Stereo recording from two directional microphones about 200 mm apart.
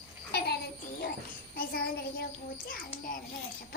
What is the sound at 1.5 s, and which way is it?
A child's voice, 50° left (ahead or behind).